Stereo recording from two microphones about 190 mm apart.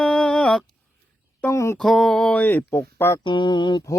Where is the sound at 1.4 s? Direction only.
15° left (ahead or behind).